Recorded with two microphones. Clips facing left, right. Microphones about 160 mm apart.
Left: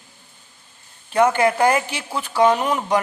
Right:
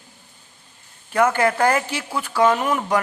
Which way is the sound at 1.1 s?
20° left (ahead or behind).